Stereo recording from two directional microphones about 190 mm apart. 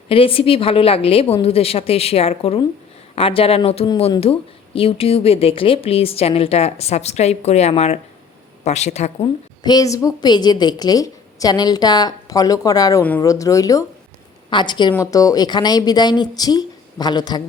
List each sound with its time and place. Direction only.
0.1 s speech: 30° left (ahead or behind)
9.6 s a woman's voice: 20° left (ahead or behind)
13.0 s a woman's voice: 10° left (ahead or behind)